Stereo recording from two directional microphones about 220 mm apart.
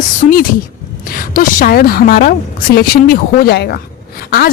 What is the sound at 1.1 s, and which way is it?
A woman's voice, 40° left (ahead or behind).